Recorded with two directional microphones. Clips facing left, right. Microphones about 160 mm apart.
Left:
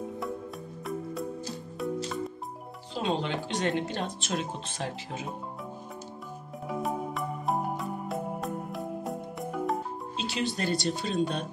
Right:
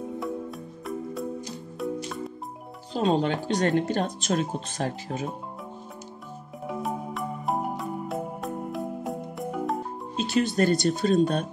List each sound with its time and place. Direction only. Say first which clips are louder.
2.0 s music: even; centre (ahead or behind)
2.9 s speech: right 6 dB; 40° right (ahead or behind)
6.7 s music: even; centre (ahead or behind)
10.1 s speech: right 8 dB; 50° right (ahead or behind)